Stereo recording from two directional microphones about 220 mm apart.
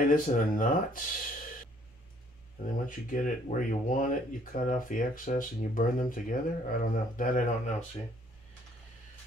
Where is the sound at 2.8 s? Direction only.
35° left (ahead or behind).